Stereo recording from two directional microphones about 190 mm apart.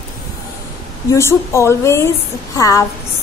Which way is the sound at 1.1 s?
15° left (ahead or behind).